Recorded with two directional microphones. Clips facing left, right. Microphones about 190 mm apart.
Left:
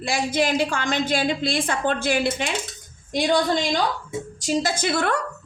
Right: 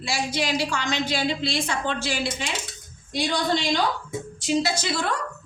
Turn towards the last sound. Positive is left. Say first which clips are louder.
# left 3 dB
turn(degrees=60)  # may be behind; listen again after turning